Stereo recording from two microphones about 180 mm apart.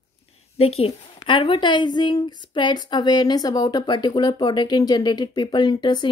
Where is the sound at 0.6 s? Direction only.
35° left (ahead or behind).